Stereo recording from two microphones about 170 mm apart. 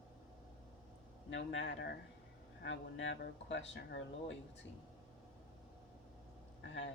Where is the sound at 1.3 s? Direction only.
90° left.